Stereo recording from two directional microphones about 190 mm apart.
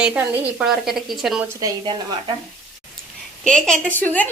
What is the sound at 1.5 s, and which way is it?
Speech, 20° right (ahead or behind).